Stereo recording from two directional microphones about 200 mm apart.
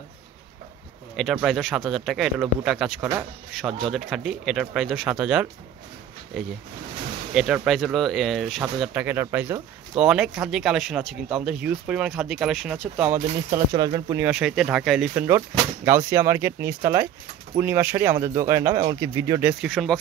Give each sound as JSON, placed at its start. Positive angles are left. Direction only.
{"t": 1.1, "sound": "speech", "side_deg": 0}
{"t": 13.2, "sound": "speech", "side_deg": -35}
{"t": 13.7, "sound": "speech", "side_deg": -20}
{"t": 14.2, "sound": "speech", "side_deg": -5}
{"t": 19.6, "sound": "speech", "side_deg": 0}